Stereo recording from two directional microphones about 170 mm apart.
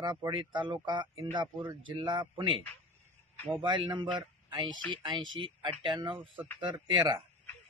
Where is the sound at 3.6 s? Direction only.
30° right (ahead or behind).